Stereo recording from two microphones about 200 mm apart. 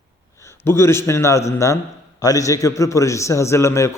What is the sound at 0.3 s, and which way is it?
A man's voice, 10° left (ahead or behind).